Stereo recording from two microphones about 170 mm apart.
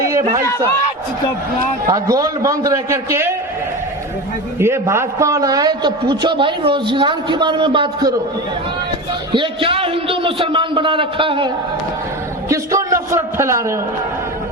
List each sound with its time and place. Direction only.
1.9 s a man's voice: 20° right (ahead or behind)
4.6 s a man's voice: 15° right (ahead or behind)
9.3 s a man's voice: 30° right (ahead or behind)
12.5 s a man's voice: 20° right (ahead or behind)